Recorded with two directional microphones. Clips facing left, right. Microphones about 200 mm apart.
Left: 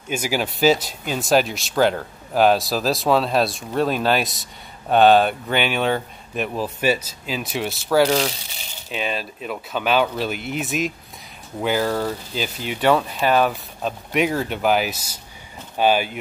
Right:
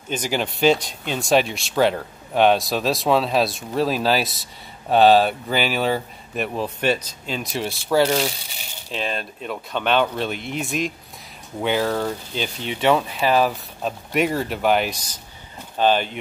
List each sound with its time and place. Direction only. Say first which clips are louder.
0.1 s speech: left 1 dB; 5° left (ahead or behind)